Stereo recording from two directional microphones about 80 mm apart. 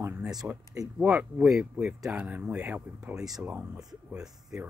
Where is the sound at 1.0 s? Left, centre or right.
Right.